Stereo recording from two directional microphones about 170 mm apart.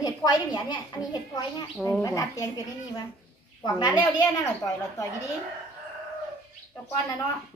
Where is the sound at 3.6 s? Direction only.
25° left (ahead or behind).